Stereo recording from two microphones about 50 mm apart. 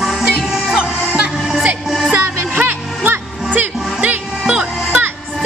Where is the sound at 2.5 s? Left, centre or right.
Right.